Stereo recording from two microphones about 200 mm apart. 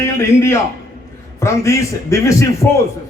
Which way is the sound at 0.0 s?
15° left (ahead or behind).